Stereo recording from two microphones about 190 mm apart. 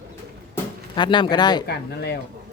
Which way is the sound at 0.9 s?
25° left (ahead or behind).